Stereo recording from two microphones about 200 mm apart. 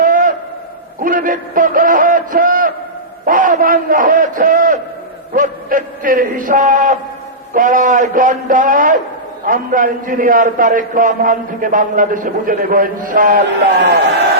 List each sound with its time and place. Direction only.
0.0 s a sound: 40° right (ahead or behind)
1.0 s music: 45° right (ahead or behind)
3.2 s a man's voice: 40° right (ahead or behind)
13.7 s a man's voice: 55° right (ahead or behind)